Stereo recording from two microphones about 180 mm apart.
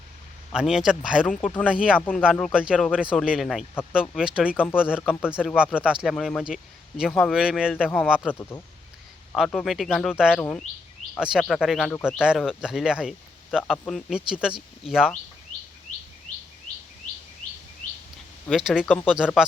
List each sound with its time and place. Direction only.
0.5 s speech: 5° right (ahead or behind)
1.4 s speech: 10° left (ahead or behind)
1.6 s speech: 5° right (ahead or behind)
2.0 s speech: 10° left (ahead or behind)
8.3 s speech: 15° left (ahead or behind)
9.3 s speech: centre (ahead or behind)
17.4 s bird vocalization: 50° left (ahead or behind)
17.8 s a sound: 50° left (ahead or behind)
18.4 s speech: centre (ahead or behind)